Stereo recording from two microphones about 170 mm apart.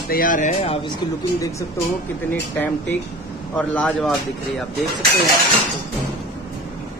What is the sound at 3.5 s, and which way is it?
Speech, 5° left (ahead or behind).